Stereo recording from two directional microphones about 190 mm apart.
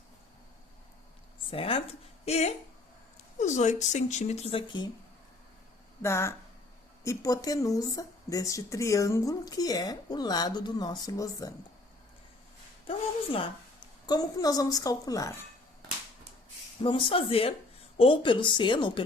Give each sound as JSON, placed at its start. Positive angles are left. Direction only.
{"t": 1.5, "sound": "a woman's voice", "side_deg": 30}
{"t": 6.0, "sound": "a woman's voice", "side_deg": 15}
{"t": 14.1, "sound": "a woman's voice", "side_deg": 20}
{"t": 16.8, "sound": "a woman's voice", "side_deg": 30}